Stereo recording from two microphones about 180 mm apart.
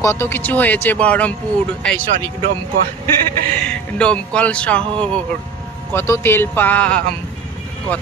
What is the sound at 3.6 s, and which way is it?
Speech, 5° left (ahead or behind).